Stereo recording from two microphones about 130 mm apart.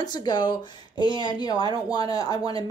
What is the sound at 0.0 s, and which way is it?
Speech, 35° left (ahead or behind).